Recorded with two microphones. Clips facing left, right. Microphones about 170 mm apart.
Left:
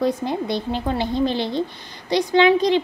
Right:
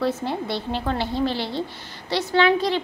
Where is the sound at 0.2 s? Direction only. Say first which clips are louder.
Left 3 dB; 15° left (ahead or behind).